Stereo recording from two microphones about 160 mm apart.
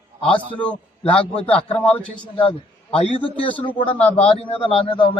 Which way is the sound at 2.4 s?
35° left (ahead or behind).